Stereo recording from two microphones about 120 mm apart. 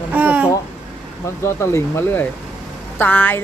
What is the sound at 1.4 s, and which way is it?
Speech, 20° left (ahead or behind).